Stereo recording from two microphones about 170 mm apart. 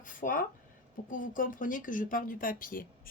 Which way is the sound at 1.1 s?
50° left (ahead or behind).